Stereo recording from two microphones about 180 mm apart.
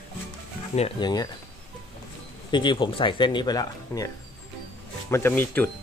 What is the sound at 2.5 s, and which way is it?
Speech, 25° left (ahead or behind).